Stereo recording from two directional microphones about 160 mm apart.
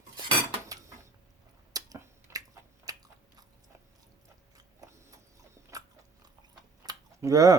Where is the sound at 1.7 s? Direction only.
20° right (ahead or behind).